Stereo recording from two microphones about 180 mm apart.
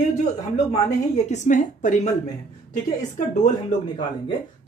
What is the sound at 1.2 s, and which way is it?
Speech, 40° left (ahead or behind).